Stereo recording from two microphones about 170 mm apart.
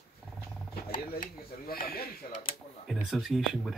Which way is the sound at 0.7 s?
55° left (ahead or behind).